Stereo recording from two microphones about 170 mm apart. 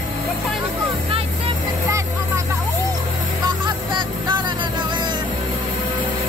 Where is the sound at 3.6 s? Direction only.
25° right (ahead or behind).